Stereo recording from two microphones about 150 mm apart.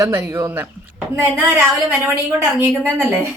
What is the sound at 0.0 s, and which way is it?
A woman's voice, 20° right (ahead or behind).